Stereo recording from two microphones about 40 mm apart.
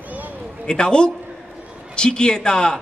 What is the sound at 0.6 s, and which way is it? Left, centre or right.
A man's voice, left.